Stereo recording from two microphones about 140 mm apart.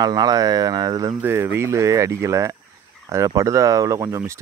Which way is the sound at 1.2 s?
15° right (ahead or behind).